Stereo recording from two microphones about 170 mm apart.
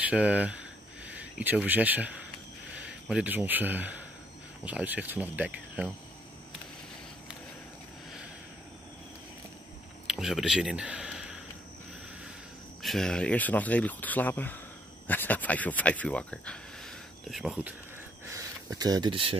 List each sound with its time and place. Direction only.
0.0 s speech: 10° right (ahead or behind)
10.0 s speech: centre (ahead or behind)
12.8 s speech: 5° left (ahead or behind)
18.3 s speech: 20° right (ahead or behind)